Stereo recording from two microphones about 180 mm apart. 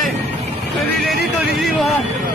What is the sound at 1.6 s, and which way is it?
Speech, centre (ahead or behind).